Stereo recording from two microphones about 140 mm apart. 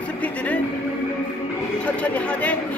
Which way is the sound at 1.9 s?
10° left (ahead or behind).